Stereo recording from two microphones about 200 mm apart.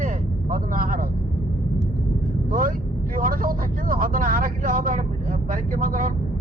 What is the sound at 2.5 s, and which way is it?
Speech, 45° right (ahead or behind).